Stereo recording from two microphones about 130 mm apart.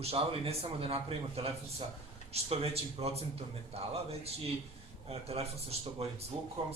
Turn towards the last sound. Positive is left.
turn(degrees=-45)  # may be behind; listen again after turning